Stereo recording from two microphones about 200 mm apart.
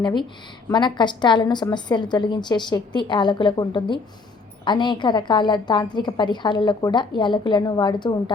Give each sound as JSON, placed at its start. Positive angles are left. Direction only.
{"t": 0.0, "sound": "a woman's voice", "side_deg": 25}